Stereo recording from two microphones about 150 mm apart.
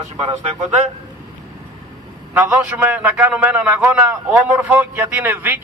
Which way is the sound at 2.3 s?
10° right (ahead or behind).